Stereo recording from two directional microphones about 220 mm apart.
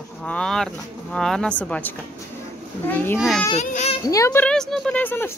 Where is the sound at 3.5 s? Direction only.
30° left (ahead or behind).